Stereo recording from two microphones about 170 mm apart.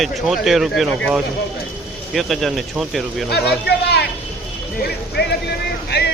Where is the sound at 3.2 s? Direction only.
70° left (ahead or behind).